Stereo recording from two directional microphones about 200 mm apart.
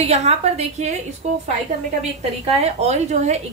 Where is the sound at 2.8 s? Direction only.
35° right (ahead or behind).